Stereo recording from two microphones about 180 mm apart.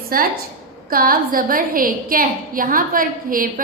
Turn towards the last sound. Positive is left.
turn(degrees=-50)  # may be behind; listen again after turning